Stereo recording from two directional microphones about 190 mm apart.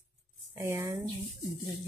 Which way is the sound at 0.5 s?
15° right (ahead or behind).